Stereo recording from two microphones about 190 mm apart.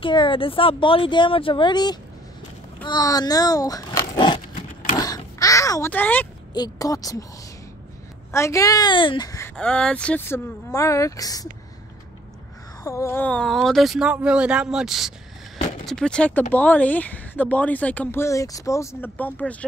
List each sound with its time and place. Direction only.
0.0 s speech: 25° left (ahead or behind)
4.9 s a sound: 20° left (ahead or behind)
6.5 s speech: 20° left (ahead or behind)
8.3 s speech: 15° left (ahead or behind)
9.6 s speech: 5° left (ahead or behind)
12.8 s speech: 15° left (ahead or behind)